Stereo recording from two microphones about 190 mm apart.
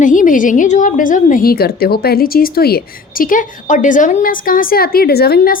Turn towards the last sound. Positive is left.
turn(degrees=50)  # may be behind; listen again after turning